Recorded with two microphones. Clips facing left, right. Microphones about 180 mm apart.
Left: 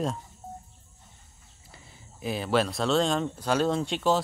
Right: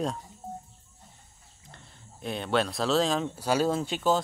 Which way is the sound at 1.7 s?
5° left (ahead or behind).